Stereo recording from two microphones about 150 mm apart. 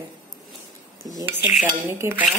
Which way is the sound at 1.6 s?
25° right (ahead or behind).